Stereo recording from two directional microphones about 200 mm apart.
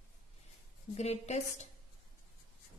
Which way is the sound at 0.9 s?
35° left (ahead or behind).